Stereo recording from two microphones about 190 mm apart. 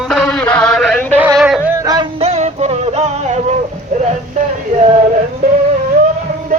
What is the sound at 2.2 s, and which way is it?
Music, 35° right (ahead or behind).